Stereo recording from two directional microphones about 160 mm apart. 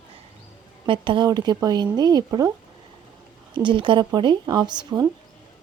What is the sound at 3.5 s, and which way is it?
Speech, 30° right (ahead or behind).